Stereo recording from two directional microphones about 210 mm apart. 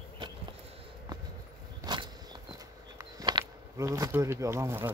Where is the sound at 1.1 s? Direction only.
20° right (ahead or behind).